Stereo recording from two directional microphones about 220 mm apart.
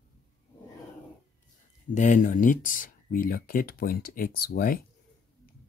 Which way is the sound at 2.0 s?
35° left (ahead or behind).